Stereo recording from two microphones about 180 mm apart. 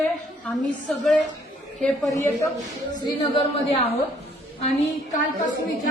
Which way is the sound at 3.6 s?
35° left (ahead or behind).